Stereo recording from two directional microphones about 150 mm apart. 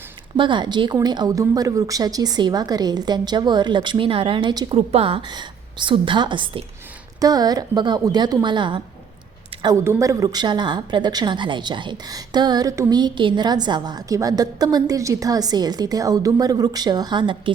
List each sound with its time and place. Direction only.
0.3 s speech: 30° right (ahead or behind)
4.7 s a woman's voice: 40° right (ahead or behind)